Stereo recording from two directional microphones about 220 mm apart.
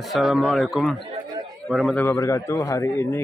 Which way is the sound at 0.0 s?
Centre (ahead or behind).